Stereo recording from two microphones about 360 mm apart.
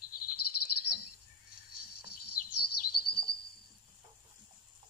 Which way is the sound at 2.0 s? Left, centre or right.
Left.